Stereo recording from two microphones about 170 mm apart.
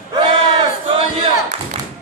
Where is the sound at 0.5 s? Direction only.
30° right (ahead or behind).